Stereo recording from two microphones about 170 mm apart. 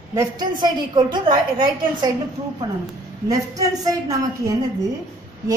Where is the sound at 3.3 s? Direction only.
20° right (ahead or behind).